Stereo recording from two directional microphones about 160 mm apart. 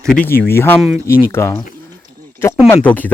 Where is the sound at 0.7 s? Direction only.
5° right (ahead or behind).